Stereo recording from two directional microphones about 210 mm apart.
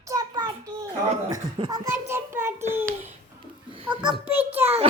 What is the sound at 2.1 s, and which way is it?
Child singing, 10° right (ahead or behind).